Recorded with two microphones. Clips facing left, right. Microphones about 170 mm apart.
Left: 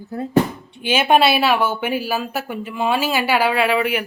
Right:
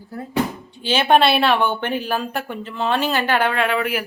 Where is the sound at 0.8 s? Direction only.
10° left (ahead or behind).